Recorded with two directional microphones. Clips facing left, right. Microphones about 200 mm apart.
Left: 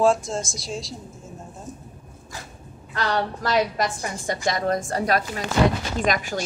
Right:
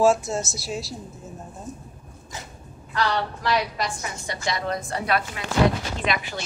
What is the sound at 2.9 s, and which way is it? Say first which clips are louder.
A woman's voice: even; 45° left (ahead or behind).